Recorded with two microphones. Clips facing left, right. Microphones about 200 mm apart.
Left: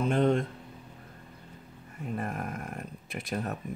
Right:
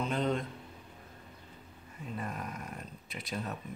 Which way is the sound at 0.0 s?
50° left (ahead or behind).